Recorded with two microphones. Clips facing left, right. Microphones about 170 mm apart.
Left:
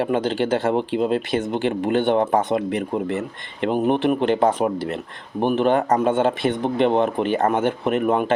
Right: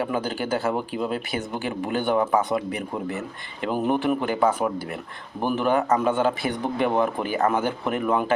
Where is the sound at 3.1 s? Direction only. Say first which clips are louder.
Left 5 dB; 90° left.